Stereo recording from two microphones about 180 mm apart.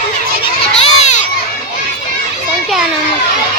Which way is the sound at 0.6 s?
35° left (ahead or behind).